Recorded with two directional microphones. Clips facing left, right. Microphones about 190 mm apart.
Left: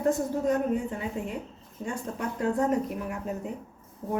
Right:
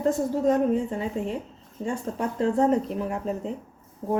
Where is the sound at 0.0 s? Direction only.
30° right (ahead or behind).